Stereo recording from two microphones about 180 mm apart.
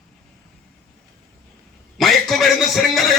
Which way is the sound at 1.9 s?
Centre (ahead or behind).